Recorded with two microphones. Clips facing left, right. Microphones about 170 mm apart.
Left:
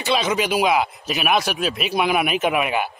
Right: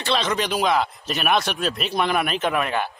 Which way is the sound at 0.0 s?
5° left (ahead or behind).